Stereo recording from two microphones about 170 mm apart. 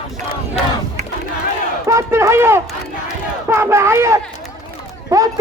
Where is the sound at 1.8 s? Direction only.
15° right (ahead or behind).